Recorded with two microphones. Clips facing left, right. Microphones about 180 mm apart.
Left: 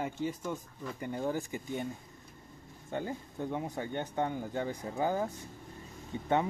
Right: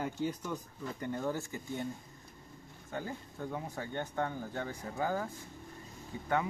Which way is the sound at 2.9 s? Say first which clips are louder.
Left 4 dB; 20° left (ahead or behind).